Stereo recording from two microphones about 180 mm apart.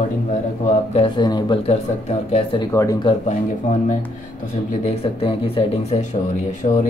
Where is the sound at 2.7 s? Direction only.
20° left (ahead or behind).